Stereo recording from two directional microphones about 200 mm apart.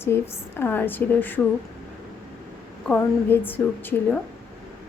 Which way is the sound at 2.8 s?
10° left (ahead or behind).